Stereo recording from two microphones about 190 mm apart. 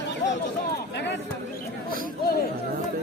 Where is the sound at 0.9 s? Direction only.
65° left (ahead or behind).